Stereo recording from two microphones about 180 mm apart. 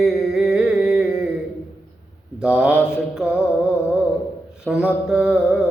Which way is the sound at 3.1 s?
5° right (ahead or behind).